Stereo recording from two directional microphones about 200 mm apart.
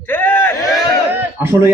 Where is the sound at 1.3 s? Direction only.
10° right (ahead or behind).